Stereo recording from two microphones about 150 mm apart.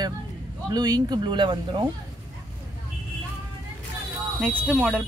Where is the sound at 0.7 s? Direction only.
25° right (ahead or behind).